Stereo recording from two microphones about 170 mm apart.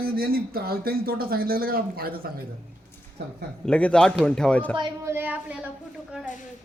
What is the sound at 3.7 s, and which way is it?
Speech, 5° left (ahead or behind).